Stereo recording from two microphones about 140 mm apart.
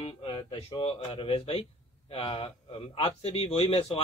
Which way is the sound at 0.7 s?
40° left (ahead or behind).